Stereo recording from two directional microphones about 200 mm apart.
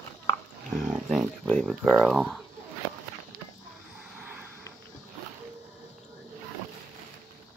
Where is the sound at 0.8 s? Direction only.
5° right (ahead or behind).